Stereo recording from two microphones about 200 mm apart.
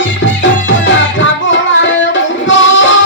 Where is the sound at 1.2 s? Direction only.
70° left (ahead or behind).